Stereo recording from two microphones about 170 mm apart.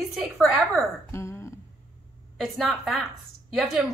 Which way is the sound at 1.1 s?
15° left (ahead or behind).